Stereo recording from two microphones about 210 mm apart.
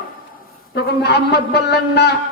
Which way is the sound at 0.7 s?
50° left (ahead or behind).